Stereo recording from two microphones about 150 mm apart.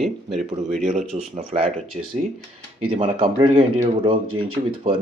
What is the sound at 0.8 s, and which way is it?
Speech, 50° right (ahead or behind).